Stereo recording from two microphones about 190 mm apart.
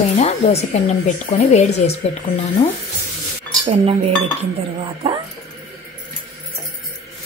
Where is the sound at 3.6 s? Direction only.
30° right (ahead or behind).